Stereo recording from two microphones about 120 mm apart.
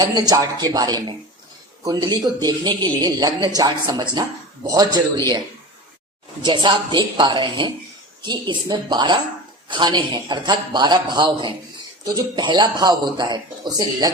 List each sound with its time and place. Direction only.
0.0 s a man's voice: 35° right (ahead or behind)
6.4 s a man's voice: 40° right (ahead or behind)